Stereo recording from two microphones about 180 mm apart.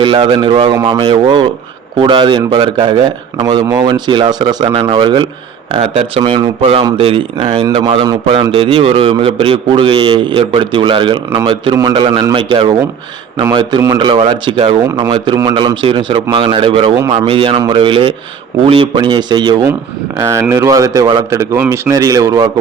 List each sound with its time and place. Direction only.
0.0 s speech: 25° right (ahead or behind)